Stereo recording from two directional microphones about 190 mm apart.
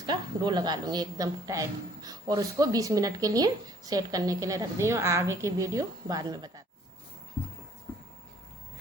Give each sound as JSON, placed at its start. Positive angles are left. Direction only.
{"t": 0.0, "sound": "a woman's voice", "side_deg": -20}